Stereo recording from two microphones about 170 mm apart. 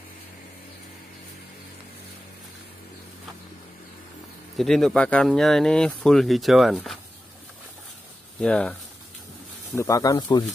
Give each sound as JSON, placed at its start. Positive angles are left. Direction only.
{"t": 4.6, "sound": "speech", "side_deg": 0}
{"t": 8.4, "sound": "speech", "side_deg": 5}
{"t": 9.8, "sound": "speech", "side_deg": 20}